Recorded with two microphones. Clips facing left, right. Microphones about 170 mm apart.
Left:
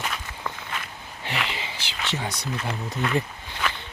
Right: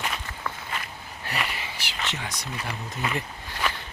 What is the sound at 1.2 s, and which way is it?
Wheeze, 25° left (ahead or behind).